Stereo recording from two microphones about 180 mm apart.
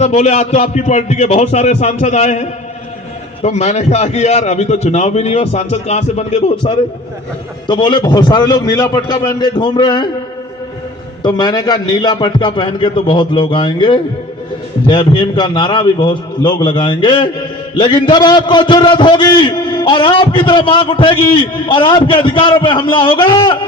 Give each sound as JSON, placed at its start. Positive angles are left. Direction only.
{"t": 0.0, "sound": "a man's voice", "side_deg": 40}
{"t": 7.7, "sound": "a man's voice", "side_deg": 25}
{"t": 11.2, "sound": "a man's voice", "side_deg": 25}